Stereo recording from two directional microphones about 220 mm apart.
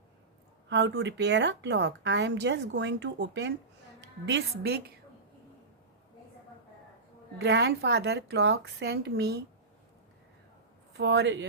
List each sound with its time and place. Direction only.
0.7 s a woman's voice: 55° right (ahead or behind)
7.3 s a woman's voice: 50° right (ahead or behind)
10.9 s a woman's voice: 50° right (ahead or behind)